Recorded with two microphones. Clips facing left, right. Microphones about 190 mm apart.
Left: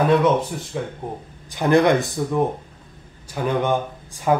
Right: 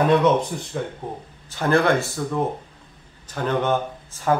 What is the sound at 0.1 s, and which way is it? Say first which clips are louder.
A man's voice: even; 5° left (ahead or behind).